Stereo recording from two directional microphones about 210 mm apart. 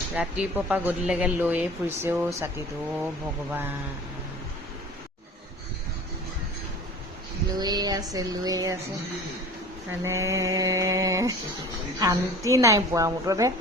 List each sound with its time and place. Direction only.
0.1 s speech: 5° right (ahead or behind)
7.5 s a sound: 20° right (ahead or behind)
8.1 s speech: 15° right (ahead or behind)
10.0 s speech: 15° right (ahead or behind)